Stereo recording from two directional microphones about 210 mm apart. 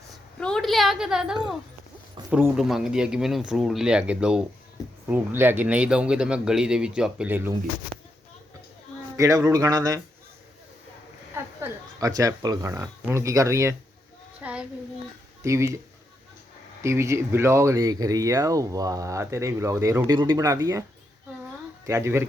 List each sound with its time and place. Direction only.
0.1 s a woman's voice: 5° left (ahead or behind)
9.1 s speech: 15° right (ahead or behind)
11.3 s speech: 15° right (ahead or behind)
14.4 s child singing: 5° right (ahead or behind)
15.4 s speech: 15° right (ahead or behind)
16.8 s speech: 15° right (ahead or behind)
21.8 s speech: 15° right (ahead or behind)